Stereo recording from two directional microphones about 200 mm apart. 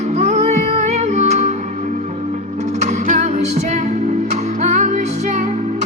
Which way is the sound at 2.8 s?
35° right (ahead or behind).